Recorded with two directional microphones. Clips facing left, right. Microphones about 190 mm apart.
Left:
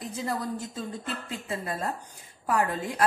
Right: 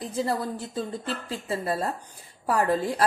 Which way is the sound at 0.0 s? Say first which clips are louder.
Right 4 dB; 35° right (ahead or behind).